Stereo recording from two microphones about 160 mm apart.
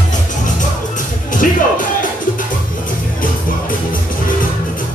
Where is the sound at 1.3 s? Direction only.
55° left (ahead or behind).